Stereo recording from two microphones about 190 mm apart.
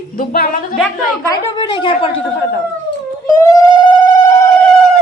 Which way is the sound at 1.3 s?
25° left (ahead or behind).